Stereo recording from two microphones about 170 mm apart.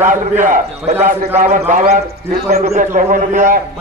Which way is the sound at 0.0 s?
50° right (ahead or behind).